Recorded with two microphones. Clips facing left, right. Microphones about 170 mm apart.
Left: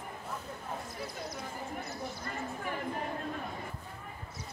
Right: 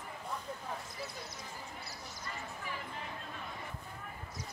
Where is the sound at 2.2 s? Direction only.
50° left (ahead or behind).